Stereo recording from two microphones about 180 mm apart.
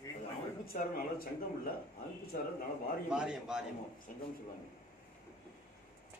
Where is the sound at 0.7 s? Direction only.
55° left (ahead or behind).